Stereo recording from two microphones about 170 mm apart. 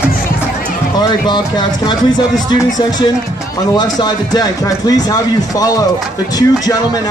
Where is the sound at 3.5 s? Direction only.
25° left (ahead or behind).